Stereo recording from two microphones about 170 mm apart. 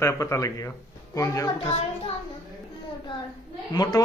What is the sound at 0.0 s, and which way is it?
A man's voice, 15° left (ahead or behind).